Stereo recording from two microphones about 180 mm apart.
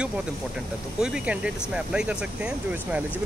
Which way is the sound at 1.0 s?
5° right (ahead or behind).